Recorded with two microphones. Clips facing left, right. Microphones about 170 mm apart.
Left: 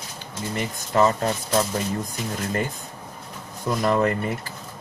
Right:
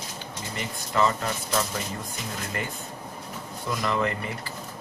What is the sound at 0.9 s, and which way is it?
Speech, 40° left (ahead or behind).